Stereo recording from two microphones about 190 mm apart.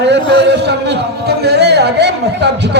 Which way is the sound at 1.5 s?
60° right (ahead or behind).